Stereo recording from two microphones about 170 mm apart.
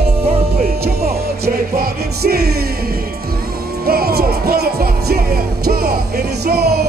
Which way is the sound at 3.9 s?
65° right (ahead or behind).